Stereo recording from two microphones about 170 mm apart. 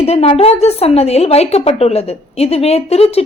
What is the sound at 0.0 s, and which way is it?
A woman's voice, 35° left (ahead or behind).